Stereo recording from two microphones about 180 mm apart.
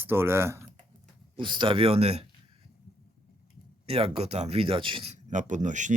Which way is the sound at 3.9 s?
30° right (ahead or behind).